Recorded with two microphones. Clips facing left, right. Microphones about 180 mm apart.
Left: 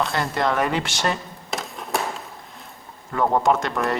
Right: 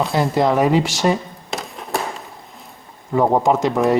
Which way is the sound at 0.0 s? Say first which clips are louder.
Right 6 dB; centre (ahead or behind).